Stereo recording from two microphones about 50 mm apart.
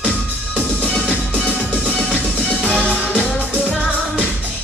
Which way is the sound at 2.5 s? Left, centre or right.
Left.